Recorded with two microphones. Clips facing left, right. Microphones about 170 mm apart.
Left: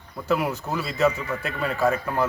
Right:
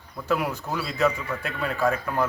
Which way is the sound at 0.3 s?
5° left (ahead or behind).